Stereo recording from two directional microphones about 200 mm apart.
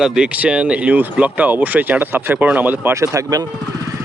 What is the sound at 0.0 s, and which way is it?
Speech, 5° right (ahead or behind).